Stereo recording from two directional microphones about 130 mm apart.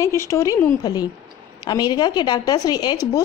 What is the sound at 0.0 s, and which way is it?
A woman's voice, 25° left (ahead or behind).